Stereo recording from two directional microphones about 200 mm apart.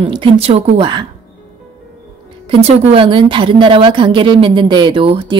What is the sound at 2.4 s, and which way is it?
Speech, 30° right (ahead or behind).